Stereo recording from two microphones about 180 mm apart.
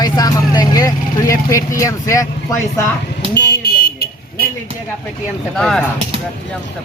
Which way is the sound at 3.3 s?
65° left (ahead or behind).